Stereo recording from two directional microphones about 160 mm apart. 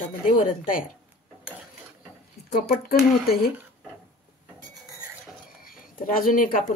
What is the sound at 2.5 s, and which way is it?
Speech, 70° left (ahead or behind).